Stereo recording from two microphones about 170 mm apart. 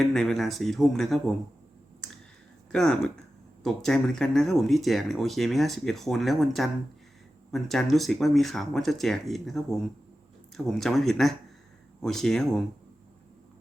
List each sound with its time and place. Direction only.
0.0 s speech: centre (ahead or behind)
2.7 s speech: 5° left (ahead or behind)